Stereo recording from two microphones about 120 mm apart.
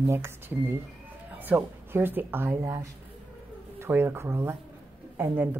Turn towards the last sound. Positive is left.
turn(degrees=-15)  # may be behind; listen again after turning